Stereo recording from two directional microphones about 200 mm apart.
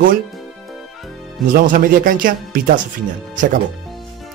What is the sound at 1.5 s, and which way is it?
Speech, 45° right (ahead or behind).